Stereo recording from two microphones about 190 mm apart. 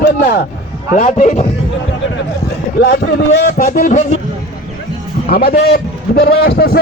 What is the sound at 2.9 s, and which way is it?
A man's voice, 60° left (ahead or behind).